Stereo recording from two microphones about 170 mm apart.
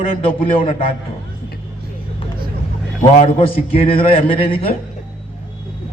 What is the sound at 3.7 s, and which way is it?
A man's voice, 35° left (ahead or behind).